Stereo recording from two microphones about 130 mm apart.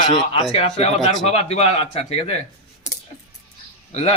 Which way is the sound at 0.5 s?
55° left (ahead or behind).